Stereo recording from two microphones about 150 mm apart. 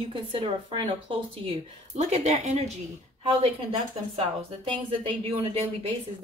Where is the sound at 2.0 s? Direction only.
50° right (ahead or behind).